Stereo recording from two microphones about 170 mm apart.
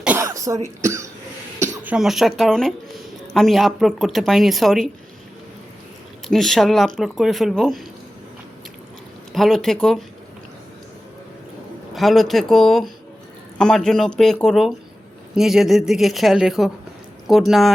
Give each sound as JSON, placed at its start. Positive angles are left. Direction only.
{"t": 0.0, "sound": "cough", "side_deg": -15}
{"t": 1.6, "sound": "speech", "side_deg": -15}
{"t": 6.2, "sound": "speech", "side_deg": 0}
{"t": 9.3, "sound": "speech", "side_deg": 0}
{"t": 11.9, "sound": "speech", "side_deg": 0}